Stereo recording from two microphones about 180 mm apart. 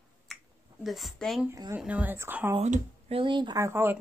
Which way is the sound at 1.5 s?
20° right (ahead or behind).